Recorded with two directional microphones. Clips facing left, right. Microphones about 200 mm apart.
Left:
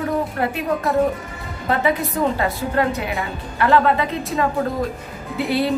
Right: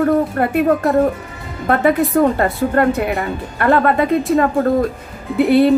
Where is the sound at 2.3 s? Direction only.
55° right (ahead or behind).